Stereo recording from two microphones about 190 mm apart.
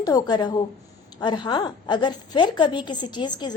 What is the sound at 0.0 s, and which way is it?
A woman's voice, 20° left (ahead or behind).